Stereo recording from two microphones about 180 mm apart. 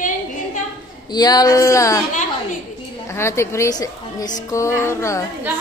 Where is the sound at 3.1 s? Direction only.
15° left (ahead or behind).